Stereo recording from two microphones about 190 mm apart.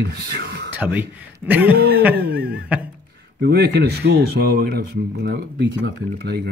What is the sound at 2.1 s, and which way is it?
Speech, 55° right (ahead or behind).